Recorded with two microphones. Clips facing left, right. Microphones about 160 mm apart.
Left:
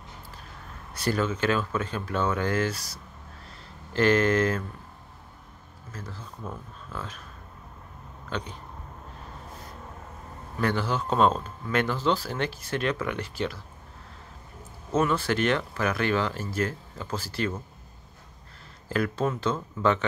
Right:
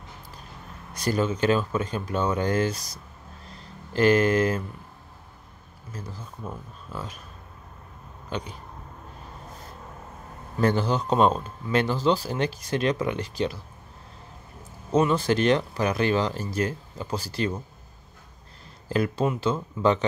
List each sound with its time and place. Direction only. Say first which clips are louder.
0.9 s speech: right 2 dB; 15° right (ahead or behind)
5.9 s speech: right 2 dB; 15° right (ahead or behind)
8.3 s speech: right 1 dB; 10° right (ahead or behind)
10.8 s speech: left 1 dB; 20° right (ahead or behind)
11.7 s speech: right 2 dB; 30° right (ahead or behind)
12.0 s speech: right 3 dB; 15° right (ahead or behind)
14.9 s speech: right 3 dB; 15° right (ahead or behind)
18.9 s speech: right 2 dB; 20° right (ahead or behind)